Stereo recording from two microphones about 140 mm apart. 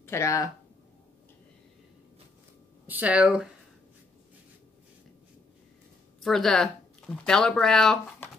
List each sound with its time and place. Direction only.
0.0 s speech: 20° left (ahead or behind)
2.9 s speech: 10° right (ahead or behind)
6.2 s speech: 5° left (ahead or behind)